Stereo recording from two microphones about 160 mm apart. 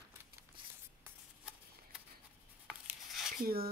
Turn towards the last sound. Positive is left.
turn(degrees=-70)  # may be behind; listen again after turning